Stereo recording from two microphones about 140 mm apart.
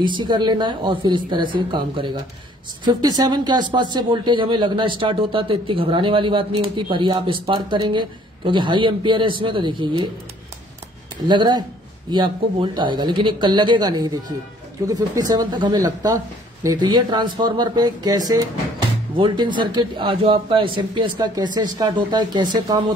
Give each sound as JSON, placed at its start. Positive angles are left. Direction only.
{"t": 0.0, "sound": "speech", "side_deg": -35}
{"t": 11.2, "sound": "speech", "side_deg": -35}